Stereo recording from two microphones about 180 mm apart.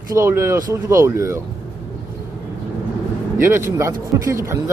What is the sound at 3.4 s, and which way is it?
Speech, 15° right (ahead or behind).